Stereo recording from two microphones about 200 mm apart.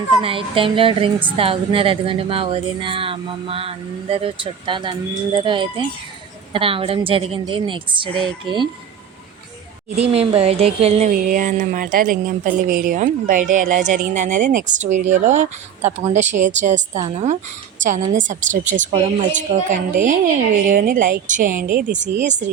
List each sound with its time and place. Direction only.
0.2 s a woman's voice: 25° right (ahead or behind)
10.0 s speech: 30° right (ahead or behind)
11.1 s speech: 45° right (ahead or behind)